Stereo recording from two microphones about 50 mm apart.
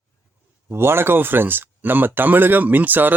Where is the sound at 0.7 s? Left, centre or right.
Right.